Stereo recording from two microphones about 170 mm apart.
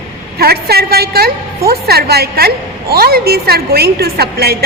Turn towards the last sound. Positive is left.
turn(degrees=-70)  # may be behind; listen again after turning